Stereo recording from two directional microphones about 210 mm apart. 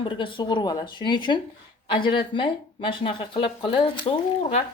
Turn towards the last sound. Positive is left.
turn(degrees=25)  # may be behind; listen again after turning